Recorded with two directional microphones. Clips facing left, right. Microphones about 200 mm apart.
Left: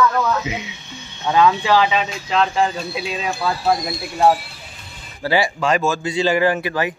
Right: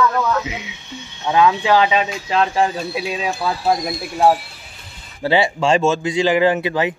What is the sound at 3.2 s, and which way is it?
Speech, 10° right (ahead or behind).